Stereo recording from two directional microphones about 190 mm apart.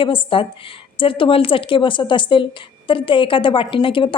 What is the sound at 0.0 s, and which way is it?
A woman's voice, 25° left (ahead or behind).